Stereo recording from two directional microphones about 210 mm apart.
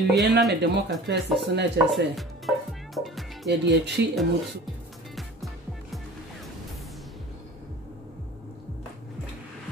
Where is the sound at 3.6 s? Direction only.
55° right (ahead or behind).